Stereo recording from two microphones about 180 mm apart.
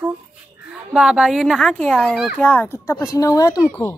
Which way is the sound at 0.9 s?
5° right (ahead or behind).